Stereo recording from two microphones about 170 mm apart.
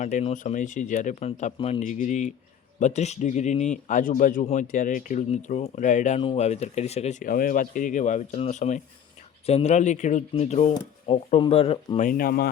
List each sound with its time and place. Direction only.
0.0 s speech: 45° left (ahead or behind)
1.5 s speech: 30° left (ahead or behind)
1.8 s speech: 45° left (ahead or behind)
11.9 s speech: 55° left (ahead or behind)